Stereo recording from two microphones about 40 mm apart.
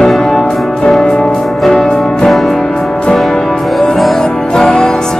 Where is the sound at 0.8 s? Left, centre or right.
Centre.